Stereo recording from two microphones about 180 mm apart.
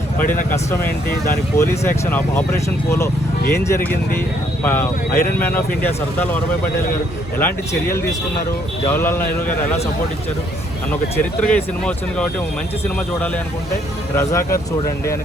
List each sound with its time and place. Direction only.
0.7 s speech: 10° left (ahead or behind)
8.9 s speech: 15° left (ahead or behind)
11.2 s speech: 5° left (ahead or behind)